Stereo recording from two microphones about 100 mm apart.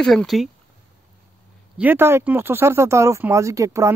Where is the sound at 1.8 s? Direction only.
20° right (ahead or behind).